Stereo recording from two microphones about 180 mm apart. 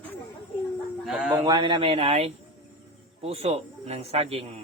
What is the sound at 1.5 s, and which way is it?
A man's voice, 25° right (ahead or behind).